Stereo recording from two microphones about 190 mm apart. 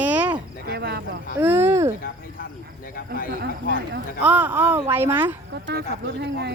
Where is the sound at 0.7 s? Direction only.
60° right (ahead or behind).